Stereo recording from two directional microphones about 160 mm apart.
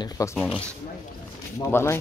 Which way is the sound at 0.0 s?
20° left (ahead or behind).